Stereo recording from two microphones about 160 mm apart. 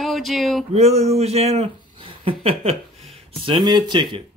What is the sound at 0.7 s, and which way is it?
Speech, 40° right (ahead or behind).